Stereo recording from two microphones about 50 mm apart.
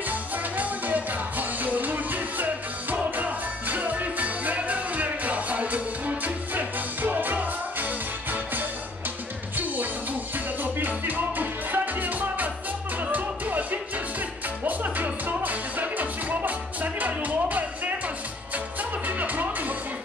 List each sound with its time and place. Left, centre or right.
0.1 s music: right
10.6 s music: right
19.0 s music: right